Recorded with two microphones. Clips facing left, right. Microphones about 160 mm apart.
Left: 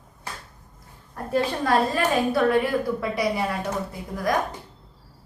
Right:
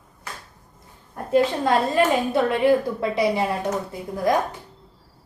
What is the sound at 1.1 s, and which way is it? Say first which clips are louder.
A woman's voice: right 5 dB; 20° right (ahead or behind).